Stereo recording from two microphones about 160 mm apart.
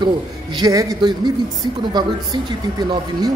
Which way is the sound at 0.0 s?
25° right (ahead or behind).